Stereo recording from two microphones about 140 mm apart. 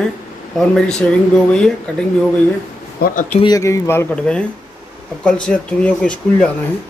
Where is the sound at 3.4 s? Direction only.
25° left (ahead or behind).